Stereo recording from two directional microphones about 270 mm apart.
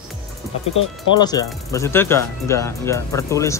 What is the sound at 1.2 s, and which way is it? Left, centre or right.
Speech, centre.